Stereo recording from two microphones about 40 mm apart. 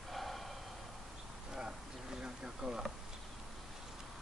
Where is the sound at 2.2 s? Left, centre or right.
Right.